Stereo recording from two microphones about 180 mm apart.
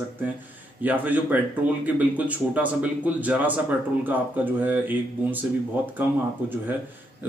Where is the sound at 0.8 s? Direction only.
10° right (ahead or behind).